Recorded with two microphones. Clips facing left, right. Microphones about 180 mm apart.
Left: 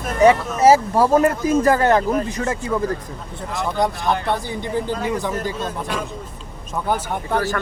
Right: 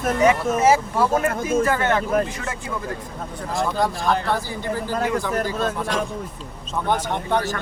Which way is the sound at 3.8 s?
20° left (ahead or behind).